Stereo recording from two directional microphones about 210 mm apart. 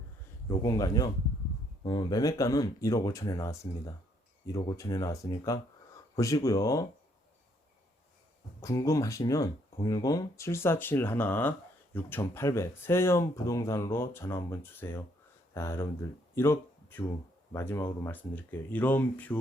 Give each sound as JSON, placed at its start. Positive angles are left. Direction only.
{"t": 0.4, "sound": "speech", "side_deg": 15}
{"t": 8.6, "sound": "speech", "side_deg": 15}